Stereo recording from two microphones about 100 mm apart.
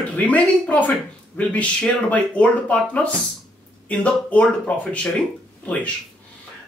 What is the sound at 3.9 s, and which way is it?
Speech, 15° left (ahead or behind).